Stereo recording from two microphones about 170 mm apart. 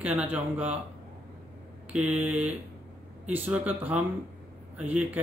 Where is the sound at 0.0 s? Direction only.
10° right (ahead or behind).